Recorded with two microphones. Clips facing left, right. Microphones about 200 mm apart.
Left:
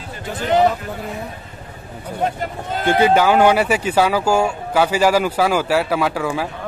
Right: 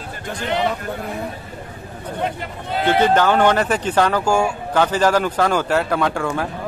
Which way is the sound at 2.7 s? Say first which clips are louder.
Even; 45° left (ahead or behind).